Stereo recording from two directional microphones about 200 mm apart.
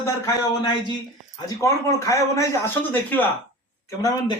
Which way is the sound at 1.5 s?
15° left (ahead or behind).